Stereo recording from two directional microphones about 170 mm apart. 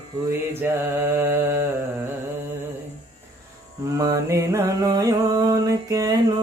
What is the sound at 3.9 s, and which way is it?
Music, 20° right (ahead or behind).